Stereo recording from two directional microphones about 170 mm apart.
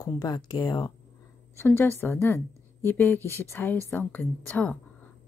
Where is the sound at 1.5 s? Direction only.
15° left (ahead or behind).